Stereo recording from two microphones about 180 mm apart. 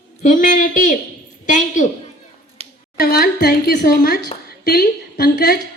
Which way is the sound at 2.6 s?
35° right (ahead or behind).